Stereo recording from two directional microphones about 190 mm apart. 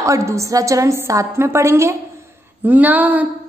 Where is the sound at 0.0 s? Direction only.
15° right (ahead or behind).